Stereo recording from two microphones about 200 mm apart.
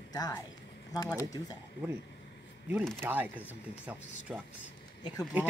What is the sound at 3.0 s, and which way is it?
Speech, 10° right (ahead or behind).